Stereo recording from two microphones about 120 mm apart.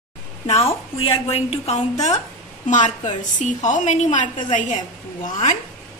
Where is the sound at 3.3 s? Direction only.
90° left.